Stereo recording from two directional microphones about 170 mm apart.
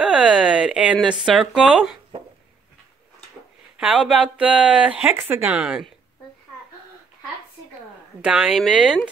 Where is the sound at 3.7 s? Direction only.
5° right (ahead or behind).